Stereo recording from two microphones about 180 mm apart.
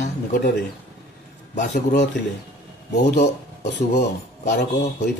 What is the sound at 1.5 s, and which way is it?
Speech, 45° left (ahead or behind).